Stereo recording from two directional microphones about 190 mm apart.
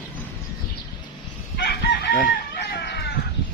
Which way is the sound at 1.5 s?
55° left (ahead or behind).